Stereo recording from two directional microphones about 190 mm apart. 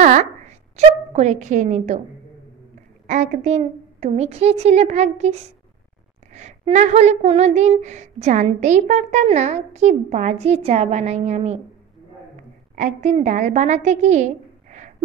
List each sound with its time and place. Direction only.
0.0 s a sound: 40° right (ahead or behind)
0.7 s a woman's voice: 35° right (ahead or behind)
3.1 s a woman's voice: 35° right (ahead or behind)
12.7 s a woman's voice: 40° right (ahead or behind)